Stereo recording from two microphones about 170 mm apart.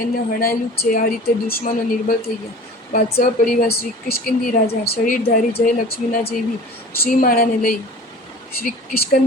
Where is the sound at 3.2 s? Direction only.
55° left (ahead or behind).